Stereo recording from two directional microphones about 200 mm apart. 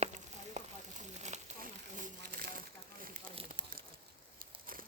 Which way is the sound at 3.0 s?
45° right (ahead or behind).